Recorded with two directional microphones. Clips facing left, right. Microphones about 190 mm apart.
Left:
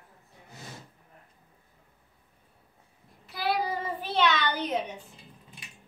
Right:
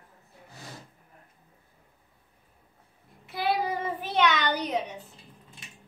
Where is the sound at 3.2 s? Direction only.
20° right (ahead or behind).